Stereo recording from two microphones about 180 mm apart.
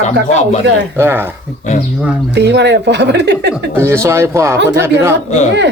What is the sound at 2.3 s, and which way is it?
A woman's voice, 75° right (ahead or behind).